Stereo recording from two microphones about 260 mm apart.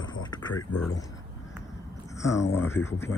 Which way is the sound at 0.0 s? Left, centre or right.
Centre.